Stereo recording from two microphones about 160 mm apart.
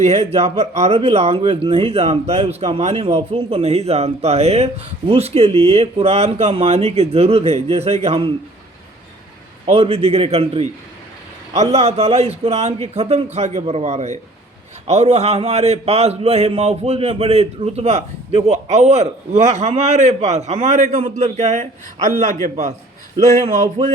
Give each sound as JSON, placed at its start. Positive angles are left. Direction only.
{"t": 0.0, "sound": "speech", "side_deg": -40}
{"t": 9.6, "sound": "a man's voice", "side_deg": -40}